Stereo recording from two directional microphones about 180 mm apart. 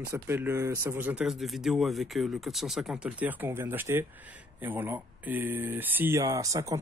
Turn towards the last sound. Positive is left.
turn(degrees=-20)  # may be behind; listen again after turning